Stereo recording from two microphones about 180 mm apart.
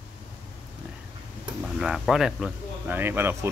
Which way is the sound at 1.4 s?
5° right (ahead or behind).